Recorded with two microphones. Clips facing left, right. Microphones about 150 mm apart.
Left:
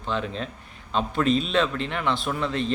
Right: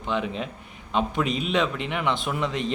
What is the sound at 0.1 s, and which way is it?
Speech, 15° right (ahead or behind).